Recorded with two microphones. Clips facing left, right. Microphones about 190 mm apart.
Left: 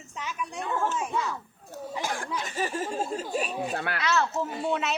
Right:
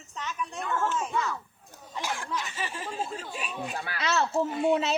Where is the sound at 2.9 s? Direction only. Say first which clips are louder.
Left 6 dB; 45° left (ahead or behind).